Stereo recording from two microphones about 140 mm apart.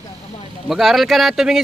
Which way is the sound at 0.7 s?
Centre (ahead or behind).